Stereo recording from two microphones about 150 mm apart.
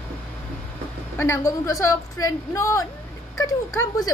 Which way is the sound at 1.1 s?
15° left (ahead or behind).